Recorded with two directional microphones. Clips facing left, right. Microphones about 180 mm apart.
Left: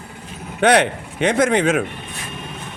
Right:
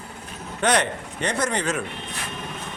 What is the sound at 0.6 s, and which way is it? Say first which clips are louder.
A man's voice: left 7 dB; 65° left (ahead or behind).